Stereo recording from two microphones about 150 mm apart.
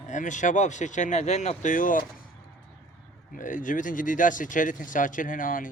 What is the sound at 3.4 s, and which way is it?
Speech, 60° left (ahead or behind).